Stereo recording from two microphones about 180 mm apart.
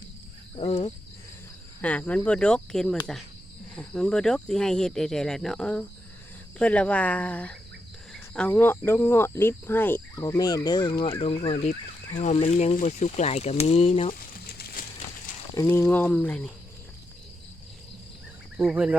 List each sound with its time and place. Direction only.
0.5 s cricket: 30° left (ahead or behind)
1.8 s speech: 10° left (ahead or behind); by 14.2 s 35° left (ahead or behind)
15.5 s speech: 15° left (ahead or behind)
18.5 s speech: 10° right (ahead or behind)